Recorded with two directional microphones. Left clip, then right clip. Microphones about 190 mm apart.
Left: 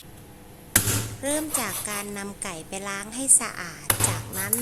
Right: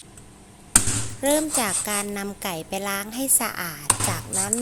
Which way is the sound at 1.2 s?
25° right (ahead or behind).